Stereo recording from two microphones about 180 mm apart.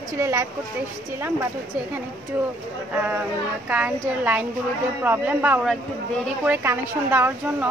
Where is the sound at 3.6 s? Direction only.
10° right (ahead or behind).